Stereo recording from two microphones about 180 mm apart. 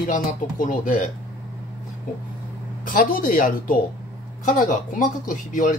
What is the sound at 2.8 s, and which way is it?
Speech, 50° left (ahead or behind).